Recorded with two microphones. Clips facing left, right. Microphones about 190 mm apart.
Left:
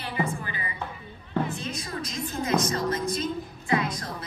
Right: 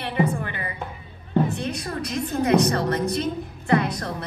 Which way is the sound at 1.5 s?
65° right (ahead or behind).